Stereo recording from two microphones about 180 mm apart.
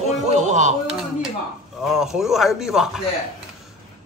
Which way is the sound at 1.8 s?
Centre (ahead or behind).